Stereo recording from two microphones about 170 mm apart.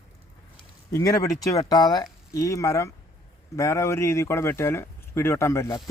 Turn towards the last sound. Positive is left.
turn(degrees=15)  # may be behind; listen again after turning